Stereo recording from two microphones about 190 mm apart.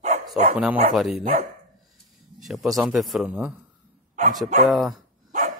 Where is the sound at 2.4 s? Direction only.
Centre (ahead or behind).